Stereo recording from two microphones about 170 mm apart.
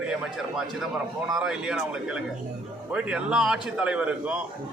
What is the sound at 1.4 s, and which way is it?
A man's voice, 5° right (ahead or behind).